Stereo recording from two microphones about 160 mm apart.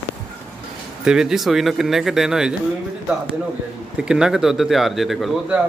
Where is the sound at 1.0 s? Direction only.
5° right (ahead or behind).